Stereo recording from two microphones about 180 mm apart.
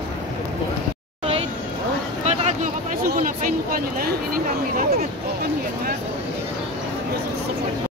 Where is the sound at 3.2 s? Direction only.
50° right (ahead or behind).